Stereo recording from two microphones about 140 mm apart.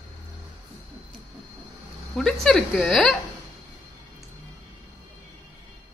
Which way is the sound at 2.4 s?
Centre (ahead or behind).